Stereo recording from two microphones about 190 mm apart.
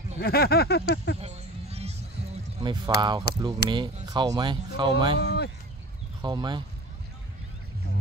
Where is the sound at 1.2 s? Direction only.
35° right (ahead or behind).